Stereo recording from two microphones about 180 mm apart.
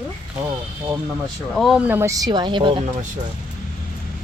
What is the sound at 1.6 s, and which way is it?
Speech, 5° right (ahead or behind).